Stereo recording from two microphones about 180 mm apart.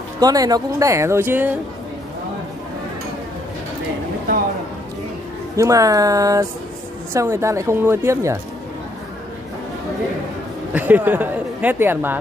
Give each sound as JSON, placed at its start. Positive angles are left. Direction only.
{"t": 0.2, "sound": "speech", "side_deg": -20}
{"t": 5.6, "sound": "speech", "side_deg": -20}
{"t": 10.7, "sound": "speech", "side_deg": -10}